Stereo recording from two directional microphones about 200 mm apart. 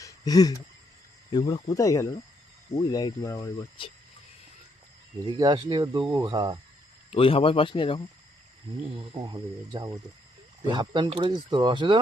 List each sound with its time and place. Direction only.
0.0 s a sound: 15° left (ahead or behind)
1.3 s speech: 20° left (ahead or behind)
5.2 s speech: 20° right (ahead or behind)
7.1 s speech: 30° left (ahead or behind)
9.0 s speech: 20° right (ahead or behind)